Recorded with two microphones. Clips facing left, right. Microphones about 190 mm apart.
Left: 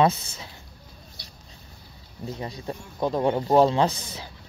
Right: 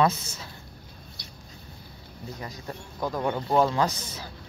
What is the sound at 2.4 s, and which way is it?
Speech, 25° left (ahead or behind).